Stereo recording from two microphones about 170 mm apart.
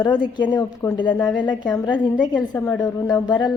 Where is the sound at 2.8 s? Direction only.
20° left (ahead or behind).